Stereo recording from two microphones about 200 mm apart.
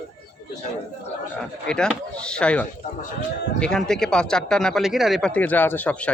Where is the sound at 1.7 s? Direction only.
5° left (ahead or behind).